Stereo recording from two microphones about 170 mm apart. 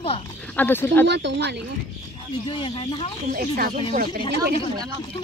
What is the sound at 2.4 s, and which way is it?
Speech, 30° left (ahead or behind).